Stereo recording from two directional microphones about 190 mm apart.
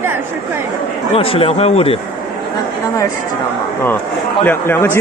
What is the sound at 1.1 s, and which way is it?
Speech, 30° left (ahead or behind).